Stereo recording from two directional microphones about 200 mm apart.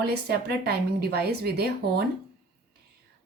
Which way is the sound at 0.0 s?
55° right (ahead or behind).